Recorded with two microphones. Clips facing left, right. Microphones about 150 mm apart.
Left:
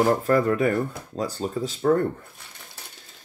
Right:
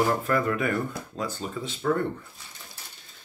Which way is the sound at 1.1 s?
35° left (ahead or behind).